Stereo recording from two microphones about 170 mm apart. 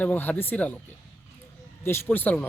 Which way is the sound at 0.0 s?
10° left (ahead or behind).